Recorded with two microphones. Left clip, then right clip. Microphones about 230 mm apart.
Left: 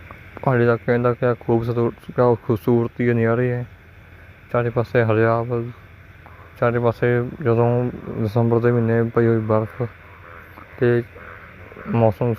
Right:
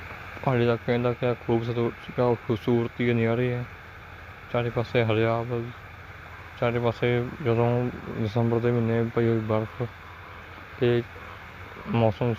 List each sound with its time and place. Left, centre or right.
0.4 s speech: left
10.8 s speech: left